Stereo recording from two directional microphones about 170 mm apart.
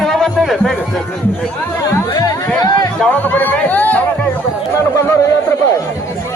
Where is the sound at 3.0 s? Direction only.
10° left (ahead or behind).